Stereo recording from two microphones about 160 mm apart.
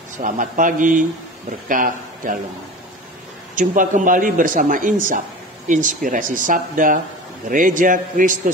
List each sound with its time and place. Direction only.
0.2 s speech: 55° right (ahead or behind)
3.5 s speech: 55° right (ahead or behind)